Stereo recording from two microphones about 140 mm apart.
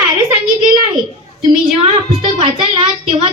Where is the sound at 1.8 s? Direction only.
40° right (ahead or behind).